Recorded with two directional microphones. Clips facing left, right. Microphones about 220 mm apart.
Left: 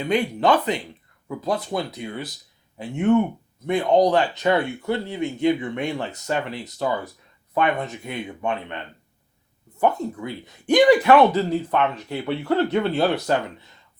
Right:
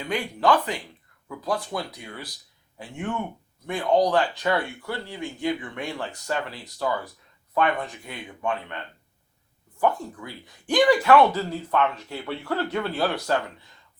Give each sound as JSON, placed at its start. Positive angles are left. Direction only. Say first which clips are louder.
{"t": 0.0, "sound": "speech", "louder": "left 4 dB", "side_deg": 20}